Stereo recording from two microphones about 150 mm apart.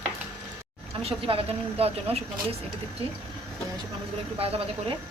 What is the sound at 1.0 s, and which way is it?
Speech, 40° right (ahead or behind).